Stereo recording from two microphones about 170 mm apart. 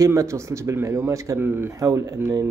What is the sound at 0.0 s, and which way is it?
Speech, 15° right (ahead or behind).